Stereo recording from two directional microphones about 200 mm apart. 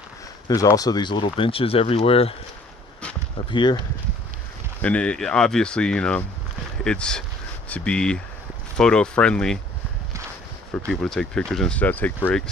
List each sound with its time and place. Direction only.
0.5 s speech: 15° left (ahead or behind)
3.4 s speech: 20° left (ahead or behind)
4.8 s speech: 5° left (ahead or behind)
10.9 s speech: 5° left (ahead or behind)